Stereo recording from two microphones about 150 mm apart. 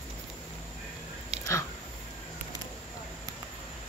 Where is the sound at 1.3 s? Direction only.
45° right (ahead or behind).